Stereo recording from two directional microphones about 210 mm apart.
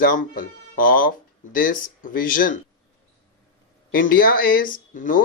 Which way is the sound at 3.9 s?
40° left (ahead or behind).